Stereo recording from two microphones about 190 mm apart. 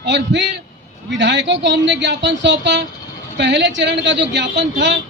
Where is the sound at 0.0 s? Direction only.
70° right (ahead or behind).